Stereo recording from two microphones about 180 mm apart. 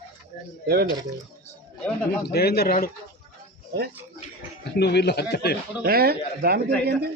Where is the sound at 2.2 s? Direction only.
60° left (ahead or behind).